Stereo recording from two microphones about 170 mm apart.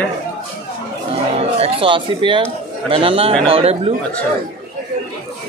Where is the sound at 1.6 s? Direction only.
30° right (ahead or behind).